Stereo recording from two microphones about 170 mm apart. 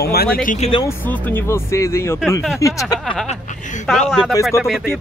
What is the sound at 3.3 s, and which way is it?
Speech, 45° left (ahead or behind).